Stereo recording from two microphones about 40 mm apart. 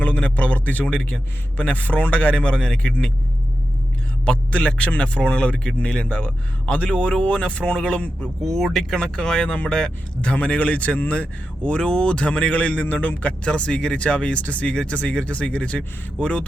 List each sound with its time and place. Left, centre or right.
0.0 s speech: left
4.3 s speech: left
8.4 s speech: centre
9.0 s speech: left
14.7 s speech: left